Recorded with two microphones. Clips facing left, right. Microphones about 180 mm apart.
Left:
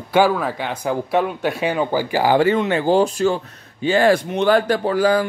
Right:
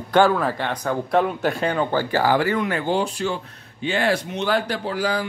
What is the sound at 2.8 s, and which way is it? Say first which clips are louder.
Speech: left 6 dB; 40° left (ahead or behind).